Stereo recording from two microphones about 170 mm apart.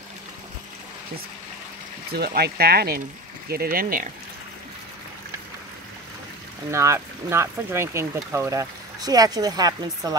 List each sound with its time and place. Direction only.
2.1 s speech: 70° right (ahead or behind)
6.7 s speech: 15° right (ahead or behind)